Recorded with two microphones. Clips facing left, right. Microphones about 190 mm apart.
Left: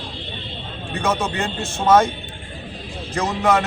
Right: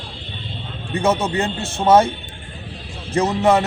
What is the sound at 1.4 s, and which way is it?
Speech, 30° right (ahead or behind).